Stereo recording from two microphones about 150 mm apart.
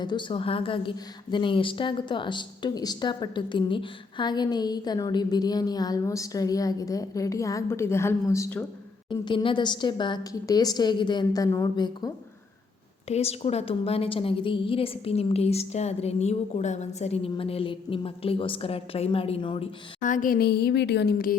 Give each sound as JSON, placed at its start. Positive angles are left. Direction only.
{"t": 0.0, "sound": "a woman's voice", "side_deg": 30}
{"t": 9.0, "sound": "a woman's voice", "side_deg": 35}
{"t": 13.1, "sound": "a woman's voice", "side_deg": 45}
{"t": 20.0, "sound": "a woman's voice", "side_deg": 60}